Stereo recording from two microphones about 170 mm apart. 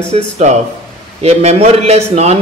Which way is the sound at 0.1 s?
45° right (ahead or behind).